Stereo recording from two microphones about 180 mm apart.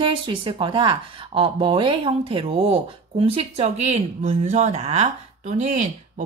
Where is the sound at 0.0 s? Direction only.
25° right (ahead or behind).